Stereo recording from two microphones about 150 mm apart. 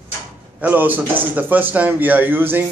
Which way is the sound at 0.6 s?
10° right (ahead or behind).